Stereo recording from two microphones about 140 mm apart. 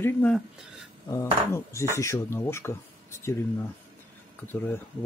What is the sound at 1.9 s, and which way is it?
Speech, 20° left (ahead or behind).